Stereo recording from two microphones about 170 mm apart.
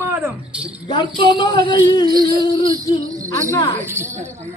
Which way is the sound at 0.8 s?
25° left (ahead or behind).